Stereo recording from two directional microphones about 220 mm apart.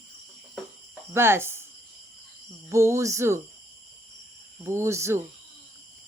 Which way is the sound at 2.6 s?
10° right (ahead or behind).